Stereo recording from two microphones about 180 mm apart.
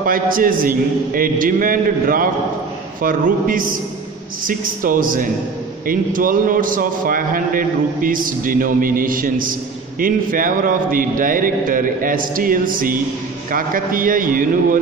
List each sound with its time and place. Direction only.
0.0 s a man's voice: 50° right (ahead or behind)